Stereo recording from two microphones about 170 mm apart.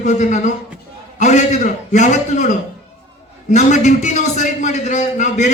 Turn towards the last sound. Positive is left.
turn(degrees=45)  # may be behind; listen again after turning